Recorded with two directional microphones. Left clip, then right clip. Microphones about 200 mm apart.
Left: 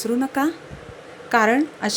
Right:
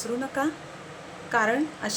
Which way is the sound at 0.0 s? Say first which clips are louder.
Left 6 dB; 40° left (ahead or behind).